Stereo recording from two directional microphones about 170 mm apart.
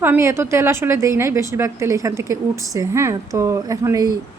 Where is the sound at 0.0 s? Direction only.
15° right (ahead or behind).